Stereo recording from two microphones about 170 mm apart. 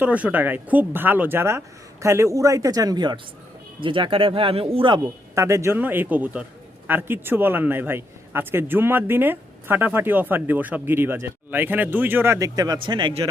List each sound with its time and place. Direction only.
0.0 s a man's voice: 10° right (ahead or behind); by 4.9 s 30° right (ahead or behind)
5.0 s a man's voice: 15° right (ahead or behind)